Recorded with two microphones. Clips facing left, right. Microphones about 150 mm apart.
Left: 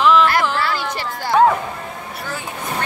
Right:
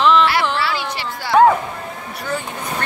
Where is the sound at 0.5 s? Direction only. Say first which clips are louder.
Even; 45° left (ahead or behind).